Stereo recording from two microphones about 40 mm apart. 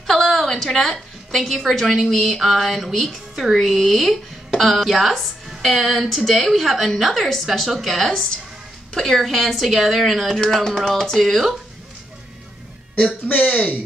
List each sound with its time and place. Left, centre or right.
0.0 s a woman's voice: centre
9.2 s a woman's voice: centre
13.3 s speech: left